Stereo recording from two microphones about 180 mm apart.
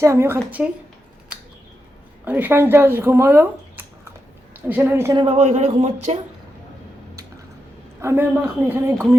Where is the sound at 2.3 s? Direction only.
10° right (ahead or behind).